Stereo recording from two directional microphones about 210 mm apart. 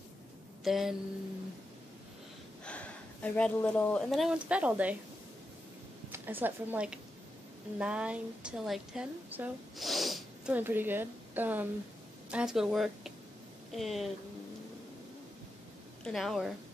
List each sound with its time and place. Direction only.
0.7 s speech: centre (ahead or behind)
2.6 s speech: 5° left (ahead or behind)
6.1 s a woman's voice: 10° right (ahead or behind)
16.0 s speech: centre (ahead or behind)